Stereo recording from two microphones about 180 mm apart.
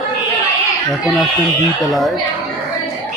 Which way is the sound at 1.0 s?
Centre (ahead or behind).